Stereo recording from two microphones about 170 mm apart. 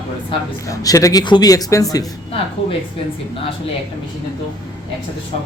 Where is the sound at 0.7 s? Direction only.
20° left (ahead or behind).